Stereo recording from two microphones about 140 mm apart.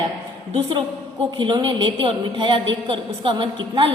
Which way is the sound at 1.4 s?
35° right (ahead or behind).